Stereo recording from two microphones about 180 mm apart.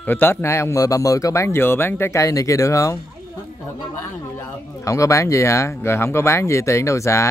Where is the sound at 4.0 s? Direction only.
20° left (ahead or behind).